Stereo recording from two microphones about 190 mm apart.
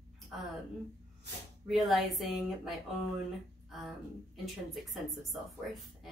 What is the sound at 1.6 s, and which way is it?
Speech, centre (ahead or behind).